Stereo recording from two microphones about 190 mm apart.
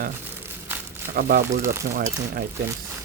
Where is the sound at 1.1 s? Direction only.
50° right (ahead or behind).